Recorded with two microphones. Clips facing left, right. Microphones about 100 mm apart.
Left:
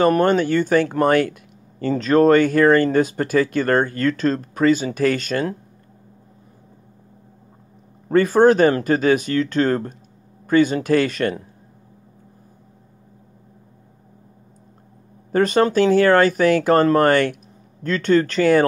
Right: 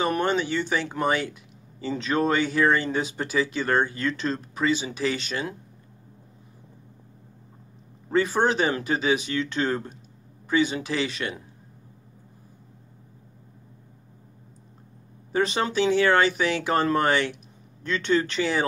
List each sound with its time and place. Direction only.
0.0 s speech: 45° left (ahead or behind)
8.1 s speech: 50° left (ahead or behind)
15.3 s speech: 45° left (ahead or behind)